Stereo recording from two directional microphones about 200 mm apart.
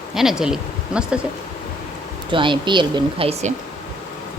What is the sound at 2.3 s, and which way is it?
Speech, 25° right (ahead or behind).